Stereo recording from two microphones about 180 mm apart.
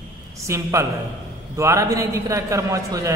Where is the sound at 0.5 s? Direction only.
15° right (ahead or behind).